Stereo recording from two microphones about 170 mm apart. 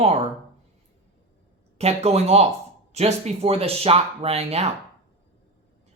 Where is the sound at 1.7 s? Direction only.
40° right (ahead or behind).